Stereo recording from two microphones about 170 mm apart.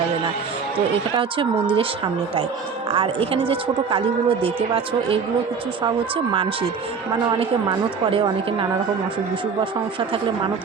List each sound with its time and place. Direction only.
1.1 s a woman's voice: 30° right (ahead or behind)
2.9 s a woman's voice: 30° right (ahead or behind)
8.1 s a woman's voice: 30° right (ahead or behind)